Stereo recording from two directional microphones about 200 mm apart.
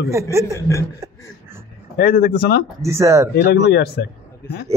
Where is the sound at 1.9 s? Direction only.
50° left (ahead or behind).